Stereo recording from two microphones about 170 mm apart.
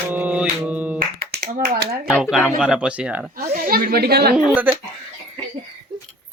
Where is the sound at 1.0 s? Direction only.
65° right (ahead or behind).